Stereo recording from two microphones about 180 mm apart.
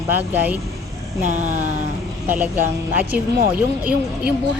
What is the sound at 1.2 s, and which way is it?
Speech, 45° right (ahead or behind).